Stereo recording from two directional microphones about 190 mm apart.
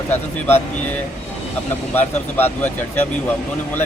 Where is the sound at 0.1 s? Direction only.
10° left (ahead or behind).